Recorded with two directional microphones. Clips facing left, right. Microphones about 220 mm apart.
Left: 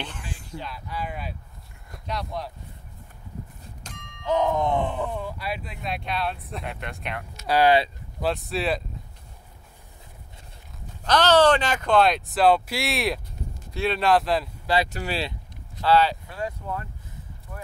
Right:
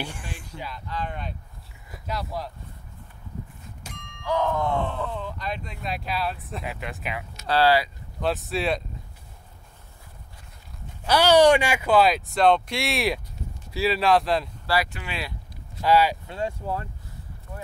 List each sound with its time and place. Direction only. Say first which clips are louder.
0.7 s speech: right 2 dB; 10° left (ahead or behind)
3.8 s thunk: right 1 dB; centre (ahead or behind)
4.2 s speech: left 2 dB; 20° left (ahead or behind); by 7.2 s 5° right (ahead or behind)
7.4 s speech: left 1 dB; 15° left (ahead or behind)
8.2 s speech: even; centre (ahead or behind)
11.1 s speech: right 2 dB; 10° right (ahead or behind)
14.9 s speech: left 6 dB; 40° left (ahead or behind)
15.8 s speech: even; 10° right (ahead or behind)
16.3 s speech: right 2 dB; 25° right (ahead or behind)